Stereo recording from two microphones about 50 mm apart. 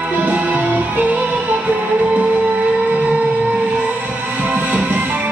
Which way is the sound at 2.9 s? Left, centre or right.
Right.